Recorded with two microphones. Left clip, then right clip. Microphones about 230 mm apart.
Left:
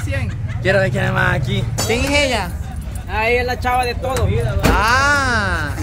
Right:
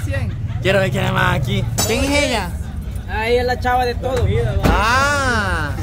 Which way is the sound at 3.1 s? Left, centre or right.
Left.